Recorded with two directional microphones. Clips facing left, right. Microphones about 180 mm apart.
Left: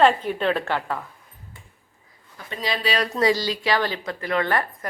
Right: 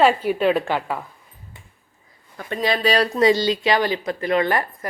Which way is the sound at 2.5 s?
55° right (ahead or behind).